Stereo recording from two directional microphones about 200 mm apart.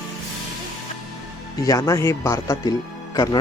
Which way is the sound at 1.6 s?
15° left (ahead or behind).